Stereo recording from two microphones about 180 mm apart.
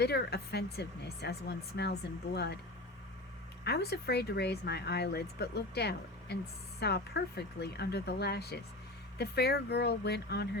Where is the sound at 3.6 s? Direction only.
65° left (ahead or behind).